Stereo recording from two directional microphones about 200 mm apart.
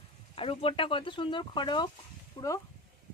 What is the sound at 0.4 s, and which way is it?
Speech, 25° left (ahead or behind).